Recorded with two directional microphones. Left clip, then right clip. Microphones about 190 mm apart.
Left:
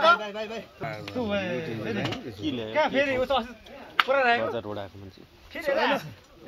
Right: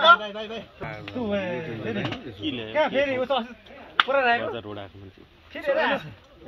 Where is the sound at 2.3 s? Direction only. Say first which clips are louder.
Right 1 dB; 35° left (ahead or behind).